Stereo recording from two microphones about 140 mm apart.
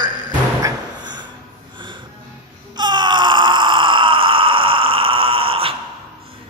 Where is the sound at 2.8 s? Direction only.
30° right (ahead or behind).